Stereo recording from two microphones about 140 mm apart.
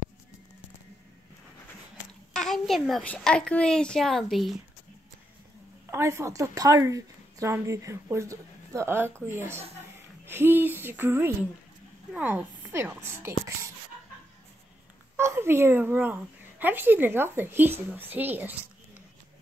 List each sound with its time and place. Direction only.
2.3 s a child's voice: centre (ahead or behind)
5.9 s a woman's voice: 20° right (ahead or behind)
15.1 s a woman's voice: 20° right (ahead or behind)